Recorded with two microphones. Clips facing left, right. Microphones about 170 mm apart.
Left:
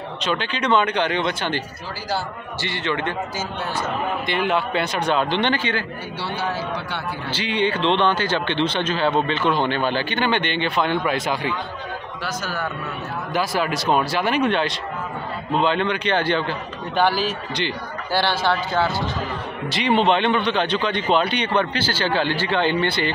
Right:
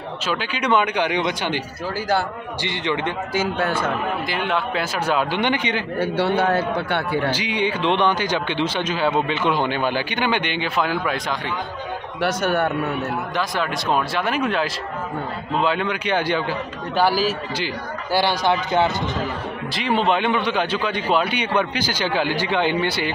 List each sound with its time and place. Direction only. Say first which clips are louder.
0.2 s a man's voice: left 1 dB; 5° right (ahead or behind)
2.6 s a man's voice: right 1 dB; 15° right (ahead or behind)
3.3 s a man's voice: right 5 dB; 55° right (ahead or behind)
4.3 s a man's voice: left 2 dB; centre (ahead or behind); by 5.9 s 15° right (ahead or behind)
5.9 s a man's voice: right 9 dB; 55° right (ahead or behind)
7.3 s a man's voice: left 1 dB; 10° right (ahead or behind)
12.2 s a man's voice: right 9 dB; 65° right (ahead or behind)
13.3 s a man's voice: left 2 dB; 5° left (ahead or behind); by 19.0 s 20° right (ahead or behind)
19.7 s a man's voice: left 2 dB; centre (ahead or behind)